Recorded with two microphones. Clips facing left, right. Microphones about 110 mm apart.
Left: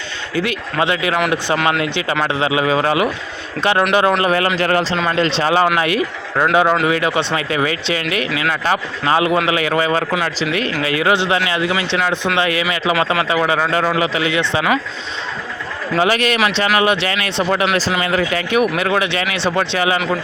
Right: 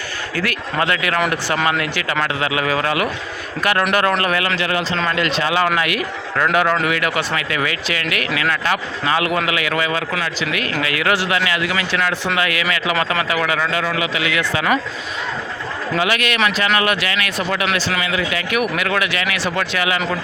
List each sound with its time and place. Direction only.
0.3 s speech: 20° left (ahead or behind)
1.5 s speech: centre (ahead or behind)
1.8 s speech: 25° left (ahead or behind)
4.5 s a man's voice: 40° left (ahead or behind)
16.0 s a man's voice: 35° left (ahead or behind)
18.0 s a man's voice: 45° left (ahead or behind)